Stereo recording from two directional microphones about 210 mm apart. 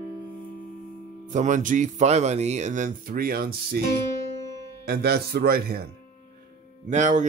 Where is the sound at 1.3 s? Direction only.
35° right (ahead or behind).